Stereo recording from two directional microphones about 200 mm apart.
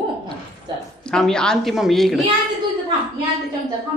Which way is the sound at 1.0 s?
5° left (ahead or behind).